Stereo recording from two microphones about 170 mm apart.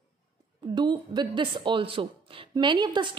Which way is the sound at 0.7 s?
25° right (ahead or behind).